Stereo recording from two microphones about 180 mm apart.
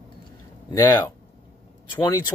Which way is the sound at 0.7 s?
20° left (ahead or behind).